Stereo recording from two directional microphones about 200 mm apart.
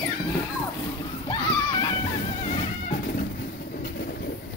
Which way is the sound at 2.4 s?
35° left (ahead or behind).